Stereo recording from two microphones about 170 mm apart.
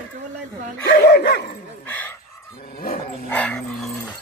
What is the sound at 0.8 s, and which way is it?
Speech, 70° left (ahead or behind).